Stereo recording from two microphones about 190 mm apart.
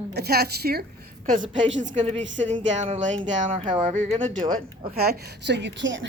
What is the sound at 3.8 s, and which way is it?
Speech, 40° right (ahead or behind).